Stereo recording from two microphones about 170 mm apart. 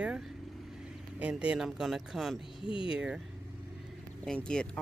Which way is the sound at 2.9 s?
5° right (ahead or behind).